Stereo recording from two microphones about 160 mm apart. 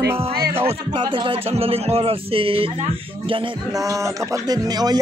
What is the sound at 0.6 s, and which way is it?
A man's voice, 35° right (ahead or behind).